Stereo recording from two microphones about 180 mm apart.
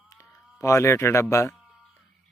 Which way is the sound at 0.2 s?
15° left (ahead or behind).